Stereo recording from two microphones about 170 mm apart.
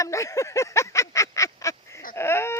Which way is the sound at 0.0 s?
20° left (ahead or behind).